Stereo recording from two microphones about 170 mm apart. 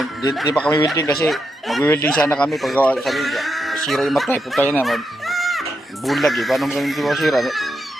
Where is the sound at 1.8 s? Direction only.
15° left (ahead or behind).